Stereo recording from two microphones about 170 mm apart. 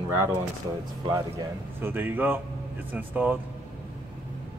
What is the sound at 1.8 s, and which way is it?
Speech, 10° right (ahead or behind).